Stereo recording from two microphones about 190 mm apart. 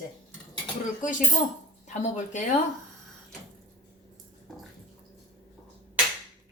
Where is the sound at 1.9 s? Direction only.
40° left (ahead or behind).